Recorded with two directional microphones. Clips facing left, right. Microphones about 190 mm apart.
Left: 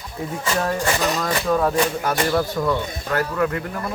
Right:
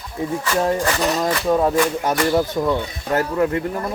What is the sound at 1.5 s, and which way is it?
Speech, 20° right (ahead or behind).